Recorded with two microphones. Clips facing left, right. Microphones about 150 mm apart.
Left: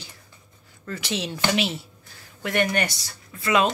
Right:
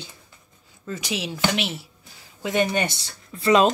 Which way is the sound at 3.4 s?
30° right (ahead or behind).